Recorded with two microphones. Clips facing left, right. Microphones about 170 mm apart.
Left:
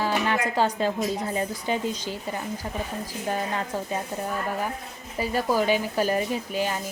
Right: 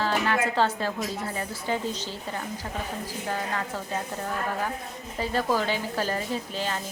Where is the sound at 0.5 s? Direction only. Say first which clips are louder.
Left 2 dB; 15° left (ahead or behind).